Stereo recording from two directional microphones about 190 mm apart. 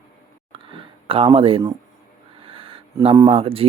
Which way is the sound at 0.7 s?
30° right (ahead or behind).